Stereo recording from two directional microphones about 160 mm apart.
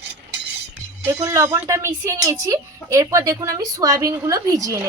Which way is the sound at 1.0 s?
15° right (ahead or behind).